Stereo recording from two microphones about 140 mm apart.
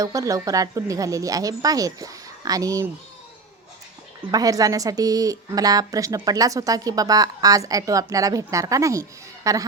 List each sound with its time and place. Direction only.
0.0 s a woman's voice: 25° right (ahead or behind)
4.3 s a woman's voice: 25° right (ahead or behind)